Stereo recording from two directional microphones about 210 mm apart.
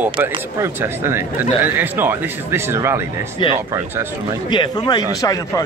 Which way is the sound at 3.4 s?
25° left (ahead or behind).